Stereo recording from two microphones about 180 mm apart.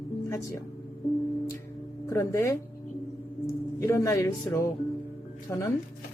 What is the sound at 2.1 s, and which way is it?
Speech, 15° left (ahead or behind).